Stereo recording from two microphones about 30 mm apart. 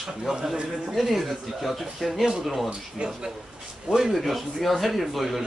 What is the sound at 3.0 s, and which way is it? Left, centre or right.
Speech, right.